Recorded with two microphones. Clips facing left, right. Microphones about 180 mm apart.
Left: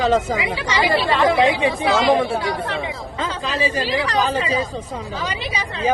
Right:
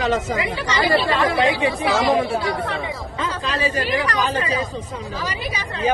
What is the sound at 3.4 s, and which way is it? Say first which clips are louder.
Speech: left 1 dB; 90° left.